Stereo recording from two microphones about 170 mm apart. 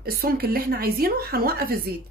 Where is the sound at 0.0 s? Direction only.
60° right (ahead or behind).